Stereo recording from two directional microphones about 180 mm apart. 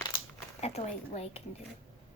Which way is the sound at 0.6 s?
35° left (ahead or behind).